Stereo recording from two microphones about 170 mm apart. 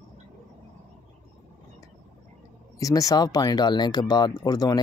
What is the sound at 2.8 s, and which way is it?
Speech, 20° left (ahead or behind).